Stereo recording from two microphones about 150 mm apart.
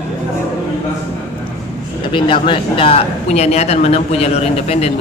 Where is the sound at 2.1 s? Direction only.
35° left (ahead or behind).